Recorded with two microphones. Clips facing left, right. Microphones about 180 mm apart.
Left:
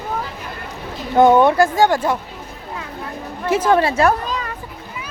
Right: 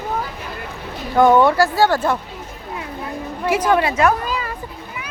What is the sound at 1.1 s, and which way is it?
Speech, 20° left (ahead or behind).